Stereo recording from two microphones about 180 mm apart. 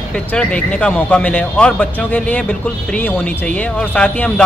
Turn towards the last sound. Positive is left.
turn(degrees=5)  # may be behind; listen again after turning